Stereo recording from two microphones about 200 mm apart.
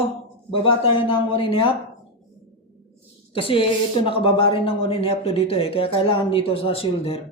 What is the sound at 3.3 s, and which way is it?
A woman's voice, 25° left (ahead or behind).